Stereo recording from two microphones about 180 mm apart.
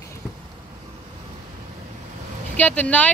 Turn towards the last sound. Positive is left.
turn(degrees=10)  # may be behind; listen again after turning